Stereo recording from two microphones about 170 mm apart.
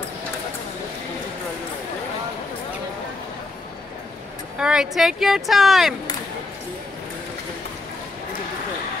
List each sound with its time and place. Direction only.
4.6 s speech: 5° right (ahead or behind)